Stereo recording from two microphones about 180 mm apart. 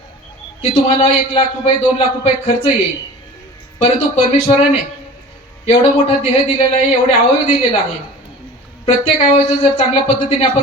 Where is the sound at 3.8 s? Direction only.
35° left (ahead or behind).